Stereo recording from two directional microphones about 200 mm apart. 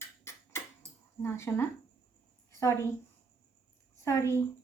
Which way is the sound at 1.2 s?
15° left (ahead or behind).